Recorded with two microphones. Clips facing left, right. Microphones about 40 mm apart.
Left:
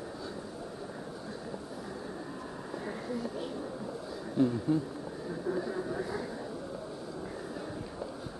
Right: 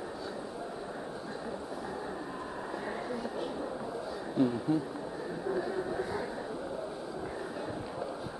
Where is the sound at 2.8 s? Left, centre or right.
Centre.